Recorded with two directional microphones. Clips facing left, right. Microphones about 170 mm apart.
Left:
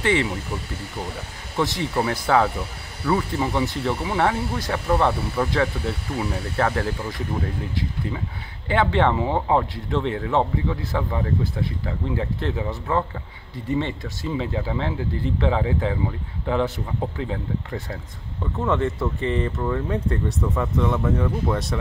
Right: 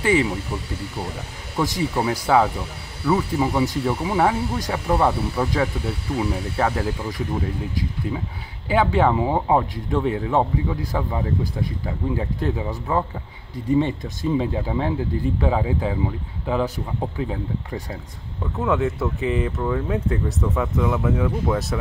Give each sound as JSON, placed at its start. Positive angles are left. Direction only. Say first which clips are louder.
{"t": 0.0, "sound": "speech", "louder": "right 2 dB", "side_deg": -10}
{"t": 1.6, "sound": "speech", "louder": "right 1 dB", "side_deg": -10}
{"t": 8.6, "sound": "speech", "louder": "right 1 dB", "side_deg": -10}
{"t": 18.6, "sound": "speech", "louder": "right 1 dB", "side_deg": 0}